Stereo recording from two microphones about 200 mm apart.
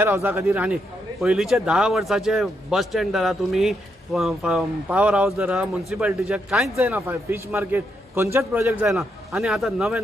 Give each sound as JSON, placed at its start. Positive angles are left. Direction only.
{"t": 0.0, "sound": "a man's voice", "side_deg": -10}